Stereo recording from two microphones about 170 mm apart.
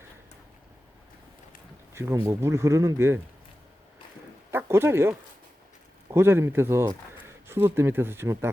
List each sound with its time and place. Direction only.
1.9 s speech: 15° right (ahead or behind)
4.5 s speech: 15° right (ahead or behind)